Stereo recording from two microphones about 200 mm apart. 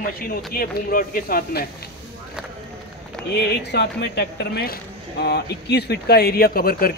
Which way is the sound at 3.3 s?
55° left (ahead or behind).